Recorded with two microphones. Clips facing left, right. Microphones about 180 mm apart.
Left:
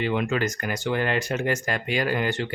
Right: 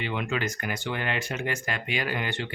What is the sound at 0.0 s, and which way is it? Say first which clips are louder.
Speech: left 5 dB; 45° left (ahead or behind).